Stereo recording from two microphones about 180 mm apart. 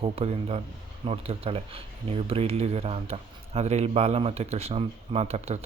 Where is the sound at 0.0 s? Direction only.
35° right (ahead or behind).